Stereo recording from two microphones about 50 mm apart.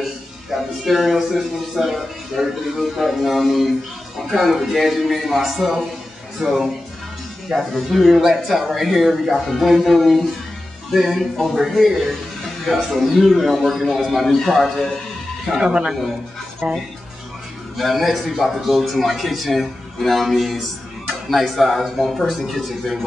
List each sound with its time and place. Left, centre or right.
0.8 s speech: centre
15.4 s speech: centre
17.7 s speech: centre